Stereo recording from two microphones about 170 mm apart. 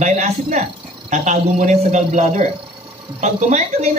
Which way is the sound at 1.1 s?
45° right (ahead or behind).